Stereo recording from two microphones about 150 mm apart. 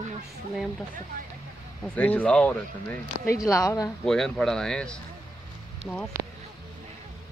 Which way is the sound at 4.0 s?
5° left (ahead or behind).